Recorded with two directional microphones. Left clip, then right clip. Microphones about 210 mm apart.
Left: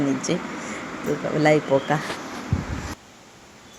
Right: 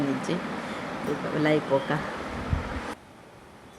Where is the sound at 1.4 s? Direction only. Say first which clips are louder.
Left 6 dB; 20° left (ahead or behind).